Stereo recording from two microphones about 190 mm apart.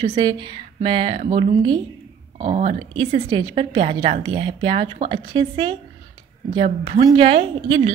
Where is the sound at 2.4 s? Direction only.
35° right (ahead or behind).